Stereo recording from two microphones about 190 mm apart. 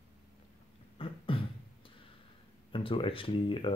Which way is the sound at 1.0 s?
30° left (ahead or behind).